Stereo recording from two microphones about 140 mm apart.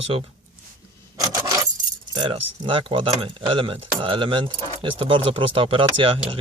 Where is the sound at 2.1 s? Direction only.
35° right (ahead or behind).